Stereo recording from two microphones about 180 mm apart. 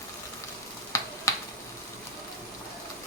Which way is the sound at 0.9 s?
15° left (ahead or behind).